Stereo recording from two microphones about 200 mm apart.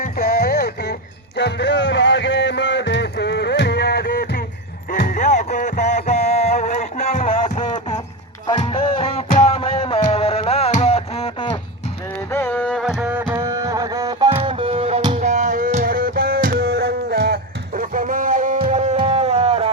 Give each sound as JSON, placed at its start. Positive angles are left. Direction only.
{"t": 0.0, "sound": "music", "side_deg": 50}
{"t": 1.4, "sound": "a sound", "side_deg": 60}
{"t": 4.9, "sound": "music", "side_deg": 45}
{"t": 12.3, "sound": "carnatic music", "side_deg": 10}
{"t": 13.0, "sound": "music", "side_deg": -10}